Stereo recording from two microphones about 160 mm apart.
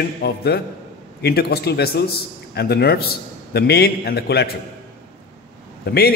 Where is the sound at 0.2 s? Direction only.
90° left.